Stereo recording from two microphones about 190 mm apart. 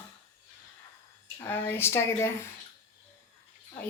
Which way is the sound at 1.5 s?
10° left (ahead or behind).